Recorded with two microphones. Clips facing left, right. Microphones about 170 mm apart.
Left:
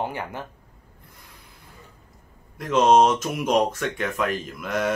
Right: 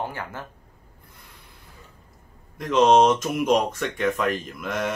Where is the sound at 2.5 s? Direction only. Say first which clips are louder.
Even; 5° left (ahead or behind).